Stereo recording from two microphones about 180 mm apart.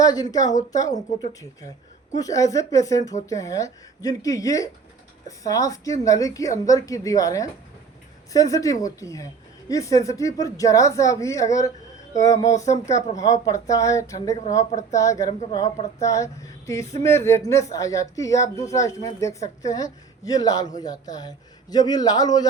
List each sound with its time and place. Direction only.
0.0 s speech: 20° left (ahead or behind)
14.6 s speech: 40° left (ahead or behind)
14.9 s speech: 15° left (ahead or behind)